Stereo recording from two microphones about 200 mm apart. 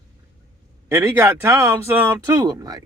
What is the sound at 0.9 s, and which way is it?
A man's voice, 15° right (ahead or behind).